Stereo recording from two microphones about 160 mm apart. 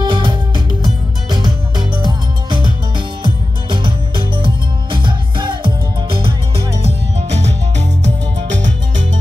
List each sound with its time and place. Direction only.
0.0 s music: 30° right (ahead or behind)
4.9 s music: 30° right (ahead or behind)
6.8 s music: 45° right (ahead or behind)